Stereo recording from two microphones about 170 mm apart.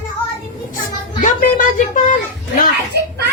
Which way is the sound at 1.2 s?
50° left (ahead or behind).